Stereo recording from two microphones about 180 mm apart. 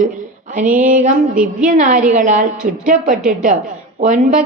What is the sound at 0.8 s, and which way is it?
A woman's voice, 45° right (ahead or behind).